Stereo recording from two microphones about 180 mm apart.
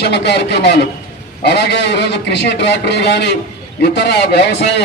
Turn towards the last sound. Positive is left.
turn(degrees=70)  # may be behind; listen again after turning